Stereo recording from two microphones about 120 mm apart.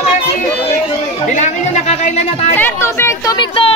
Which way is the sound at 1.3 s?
75° left (ahead or behind).